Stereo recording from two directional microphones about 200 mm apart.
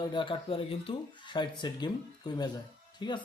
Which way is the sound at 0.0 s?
25° left (ahead or behind).